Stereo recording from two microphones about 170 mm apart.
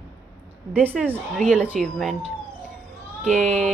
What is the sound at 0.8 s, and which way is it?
A woman's voice, 10° right (ahead or behind).